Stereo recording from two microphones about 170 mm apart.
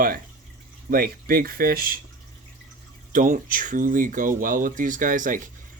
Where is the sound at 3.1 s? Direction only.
50° right (ahead or behind).